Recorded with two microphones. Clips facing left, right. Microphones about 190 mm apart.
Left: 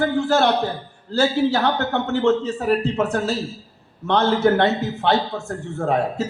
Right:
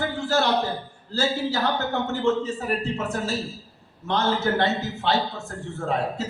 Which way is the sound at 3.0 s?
70° left (ahead or behind).